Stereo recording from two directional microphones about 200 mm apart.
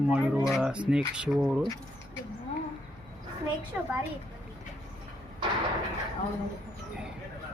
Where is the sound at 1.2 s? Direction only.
Centre (ahead or behind).